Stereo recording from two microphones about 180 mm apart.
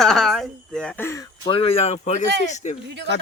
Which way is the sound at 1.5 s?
35° left (ahead or behind).